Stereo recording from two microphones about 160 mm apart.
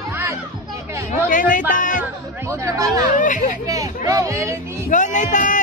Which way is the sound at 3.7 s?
20° right (ahead or behind).